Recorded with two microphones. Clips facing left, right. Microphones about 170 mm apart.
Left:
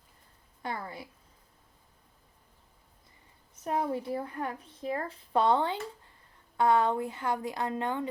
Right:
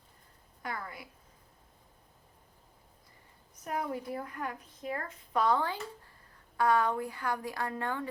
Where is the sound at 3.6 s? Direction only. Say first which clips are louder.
Left 4 dB; 30° left (ahead or behind).